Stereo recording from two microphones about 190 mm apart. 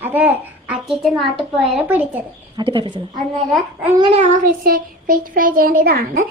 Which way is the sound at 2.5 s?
25° right (ahead or behind).